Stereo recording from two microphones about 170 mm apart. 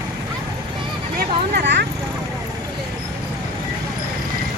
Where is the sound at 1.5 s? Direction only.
90° right.